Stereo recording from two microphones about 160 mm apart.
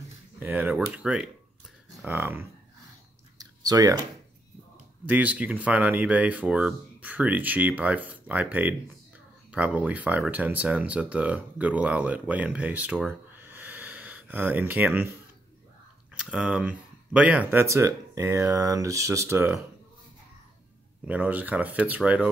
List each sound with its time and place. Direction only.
0.4 s speech: 10° right (ahead or behind)
3.3 s a sound: 25° right (ahead or behind)
5.0 s speech: 10° right (ahead or behind)
16.1 s speech: 5° right (ahead or behind)
21.1 s speech: 10° right (ahead or behind)